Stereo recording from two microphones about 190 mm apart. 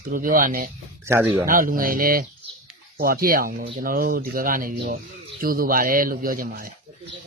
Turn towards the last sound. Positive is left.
turn(degrees=-50)  # may be behind; listen again after turning